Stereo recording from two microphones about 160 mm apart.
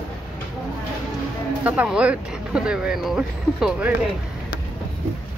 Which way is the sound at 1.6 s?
10° right (ahead or behind).